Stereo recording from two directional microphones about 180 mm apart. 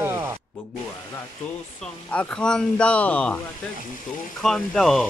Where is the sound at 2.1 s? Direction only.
5° left (ahead or behind).